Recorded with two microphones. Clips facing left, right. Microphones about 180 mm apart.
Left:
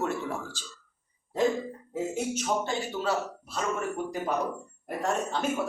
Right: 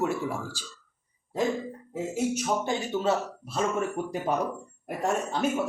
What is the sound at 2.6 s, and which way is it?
Speech, 20° right (ahead or behind).